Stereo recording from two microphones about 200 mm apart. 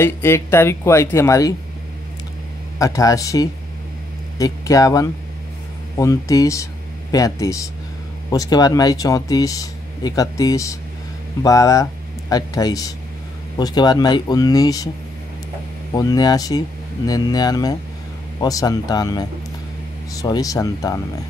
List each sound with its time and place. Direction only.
0.0 s speech: 10° left (ahead or behind)
2.8 s speech: 15° left (ahead or behind)
15.9 s speech: 20° left (ahead or behind)